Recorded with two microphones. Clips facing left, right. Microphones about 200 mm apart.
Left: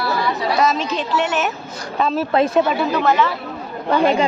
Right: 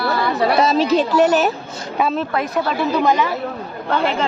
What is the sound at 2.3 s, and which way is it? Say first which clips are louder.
Speech: left 5 dB; 25° left (ahead or behind).